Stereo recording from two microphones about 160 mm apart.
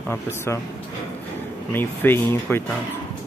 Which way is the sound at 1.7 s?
10° left (ahead or behind).